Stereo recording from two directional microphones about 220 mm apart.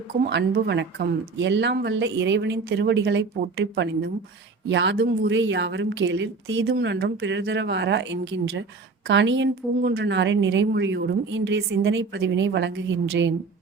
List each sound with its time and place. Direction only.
0.2 s a woman's voice: 45° right (ahead or behind)